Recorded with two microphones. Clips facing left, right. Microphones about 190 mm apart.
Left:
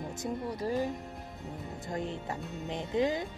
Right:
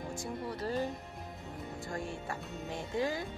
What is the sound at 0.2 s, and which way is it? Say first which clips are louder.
Speech: left 5 dB; 15° left (ahead or behind).